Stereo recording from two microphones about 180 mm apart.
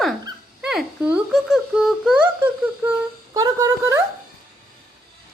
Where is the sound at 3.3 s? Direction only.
20° right (ahead or behind).